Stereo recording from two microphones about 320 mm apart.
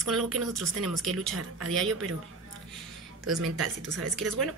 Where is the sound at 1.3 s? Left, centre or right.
Right.